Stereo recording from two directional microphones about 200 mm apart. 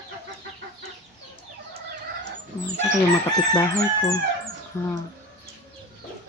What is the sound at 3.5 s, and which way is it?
Chicken, 15° left (ahead or behind).